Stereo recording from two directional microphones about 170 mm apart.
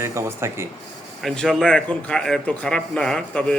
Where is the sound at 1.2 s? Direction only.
Centre (ahead or behind).